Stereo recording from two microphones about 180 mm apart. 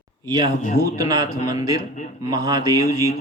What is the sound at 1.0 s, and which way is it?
Speech, 20° right (ahead or behind).